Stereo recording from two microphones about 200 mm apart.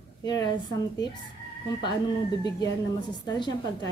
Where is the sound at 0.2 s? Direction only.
20° left (ahead or behind).